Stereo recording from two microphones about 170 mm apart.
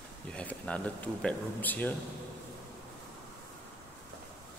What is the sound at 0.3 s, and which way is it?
Speech, 5° left (ahead or behind).